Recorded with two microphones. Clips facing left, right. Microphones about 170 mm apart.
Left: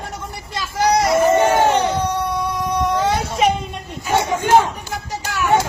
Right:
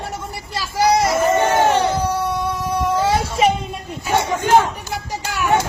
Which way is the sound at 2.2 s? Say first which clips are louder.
Even; centre (ahead or behind).